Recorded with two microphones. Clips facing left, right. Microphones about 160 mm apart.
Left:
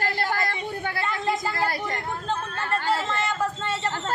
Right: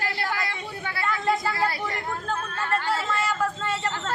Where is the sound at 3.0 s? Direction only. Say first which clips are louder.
Even; 25° left (ahead or behind).